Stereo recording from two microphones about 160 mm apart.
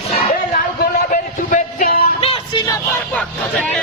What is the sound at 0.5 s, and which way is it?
Music, 60° left (ahead or behind).